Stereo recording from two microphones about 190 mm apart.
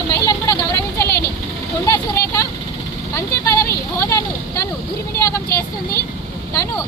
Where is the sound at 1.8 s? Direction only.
15° left (ahead or behind).